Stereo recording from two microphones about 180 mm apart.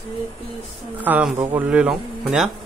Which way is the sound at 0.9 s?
10° right (ahead or behind).